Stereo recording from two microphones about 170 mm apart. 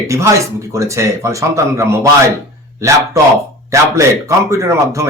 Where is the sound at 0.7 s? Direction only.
15° right (ahead or behind).